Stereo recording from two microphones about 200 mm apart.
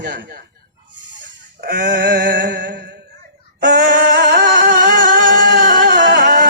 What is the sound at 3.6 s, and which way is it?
Music, 60° right (ahead or behind).